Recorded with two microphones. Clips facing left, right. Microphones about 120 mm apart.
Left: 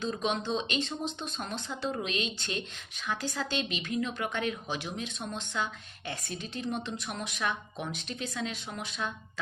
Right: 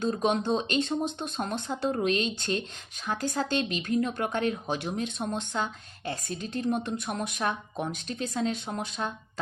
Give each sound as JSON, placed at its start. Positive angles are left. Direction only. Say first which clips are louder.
{"t": 0.0, "sound": "speech", "louder": "right 5 dB", "side_deg": -45}
{"t": 4.6, "sound": "speech", "louder": "right 5 dB", "side_deg": -55}